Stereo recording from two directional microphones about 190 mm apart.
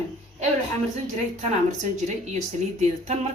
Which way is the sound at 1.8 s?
40° right (ahead or behind).